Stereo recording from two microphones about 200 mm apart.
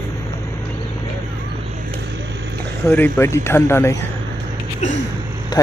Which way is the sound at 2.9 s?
10° left (ahead or behind).